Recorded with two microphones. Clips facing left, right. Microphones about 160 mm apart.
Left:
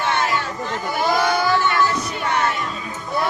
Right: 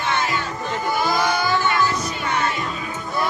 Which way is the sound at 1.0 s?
65° left (ahead or behind).